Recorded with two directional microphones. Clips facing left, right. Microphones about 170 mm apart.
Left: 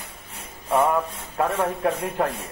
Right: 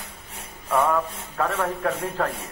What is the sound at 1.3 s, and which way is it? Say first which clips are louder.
Speech: left 2 dB; 20° left (ahead or behind).